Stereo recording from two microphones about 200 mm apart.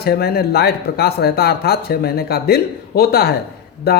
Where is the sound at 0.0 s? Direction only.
50° left (ahead or behind).